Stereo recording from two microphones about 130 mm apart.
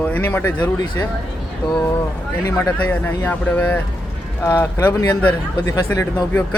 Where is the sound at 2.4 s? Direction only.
15° left (ahead or behind).